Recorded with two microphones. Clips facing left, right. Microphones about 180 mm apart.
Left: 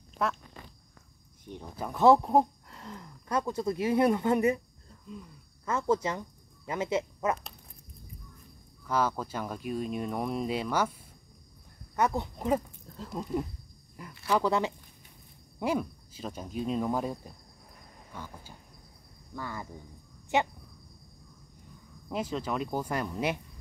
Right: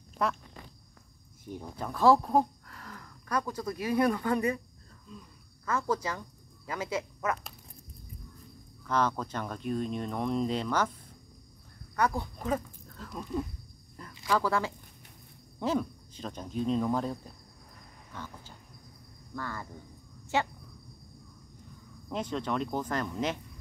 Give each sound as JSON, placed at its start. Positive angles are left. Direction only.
{"t": 0.2, "sound": "speech", "side_deg": 0}
{"t": 1.4, "sound": "speech", "side_deg": -5}
{"t": 1.8, "sound": "speech", "side_deg": 20}
{"t": 5.7, "sound": "speech", "side_deg": 25}
{"t": 8.8, "sound": "speech", "side_deg": 5}
{"t": 11.9, "sound": "speech", "side_deg": 25}
{"t": 14.3, "sound": "speech", "side_deg": 20}
{"t": 15.6, "sound": "speech", "side_deg": 10}
{"t": 22.1, "sound": "speech", "side_deg": 5}